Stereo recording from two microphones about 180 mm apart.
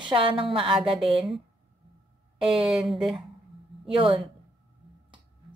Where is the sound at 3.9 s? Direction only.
30° right (ahead or behind).